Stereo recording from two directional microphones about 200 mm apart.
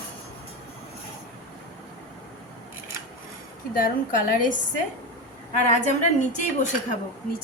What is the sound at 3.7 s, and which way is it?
A woman's voice, 45° left (ahead or behind).